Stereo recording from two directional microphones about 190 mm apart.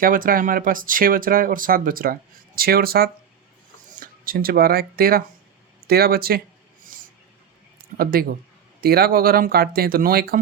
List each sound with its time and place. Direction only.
0.0 s speech: 50° right (ahead or behind)
7.9 s speech: 50° right (ahead or behind)